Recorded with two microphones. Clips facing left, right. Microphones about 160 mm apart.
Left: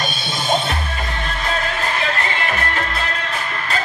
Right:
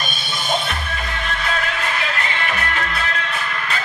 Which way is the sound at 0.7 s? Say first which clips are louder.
Left 2 dB; 35° left (ahead or behind).